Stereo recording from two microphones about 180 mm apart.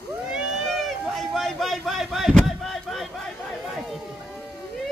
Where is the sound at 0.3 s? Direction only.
Centre (ahead or behind).